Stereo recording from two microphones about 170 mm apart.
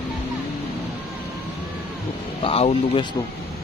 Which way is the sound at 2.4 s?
35° left (ahead or behind).